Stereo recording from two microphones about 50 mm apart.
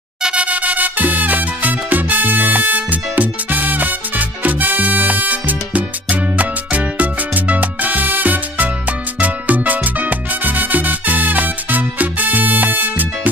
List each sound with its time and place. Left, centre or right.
0.4 s music: right